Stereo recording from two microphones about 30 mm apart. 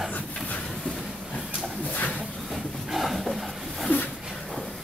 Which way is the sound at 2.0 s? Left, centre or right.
Left.